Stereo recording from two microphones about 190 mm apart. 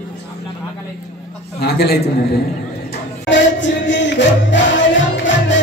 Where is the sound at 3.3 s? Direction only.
70° left (ahead or behind).